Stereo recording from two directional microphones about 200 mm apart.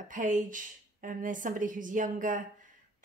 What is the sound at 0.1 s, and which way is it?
Speech, 40° right (ahead or behind).